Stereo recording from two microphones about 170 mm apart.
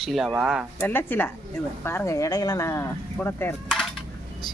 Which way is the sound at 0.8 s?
10° left (ahead or behind).